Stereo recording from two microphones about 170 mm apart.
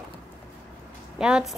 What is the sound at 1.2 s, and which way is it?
Speech, 5° right (ahead or behind).